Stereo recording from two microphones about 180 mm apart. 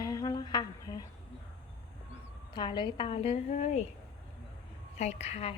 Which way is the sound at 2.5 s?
25° left (ahead or behind).